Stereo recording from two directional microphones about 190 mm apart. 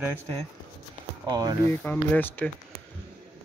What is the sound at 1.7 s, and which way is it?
Speech, 10° left (ahead or behind).